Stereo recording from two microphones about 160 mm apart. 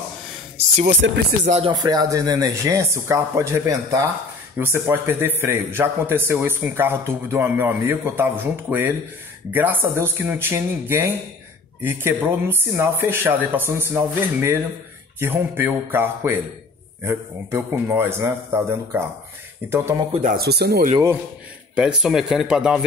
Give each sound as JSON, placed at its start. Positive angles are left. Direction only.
{"t": 1.4, "sound": "speech", "side_deg": -45}
{"t": 1.7, "sound": "a man's voice", "side_deg": -25}
{"t": 20.1, "sound": "speech", "side_deg": -45}
{"t": 20.3, "sound": "speech", "side_deg": -90}
{"t": 21.7, "sound": "speech", "side_deg": -5}